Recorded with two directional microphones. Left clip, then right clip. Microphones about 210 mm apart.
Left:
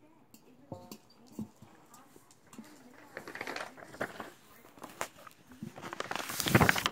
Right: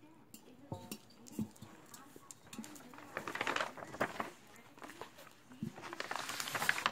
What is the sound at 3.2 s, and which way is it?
Crushing, 10° right (ahead or behind).